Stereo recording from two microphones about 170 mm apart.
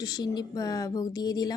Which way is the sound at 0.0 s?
25° left (ahead or behind).